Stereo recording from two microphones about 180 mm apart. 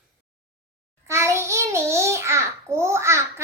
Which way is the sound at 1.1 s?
15° right (ahead or behind).